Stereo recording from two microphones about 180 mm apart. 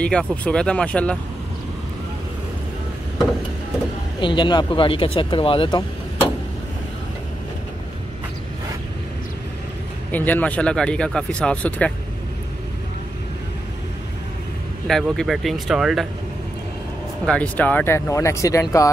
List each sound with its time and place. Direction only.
0.0 s speech: 5° left (ahead or behind)
4.2 s speech: 25° left (ahead or behind)
10.1 s speech: 10° left (ahead or behind)
14.9 s speech: centre (ahead or behind)
17.3 s speech: 10° left (ahead or behind)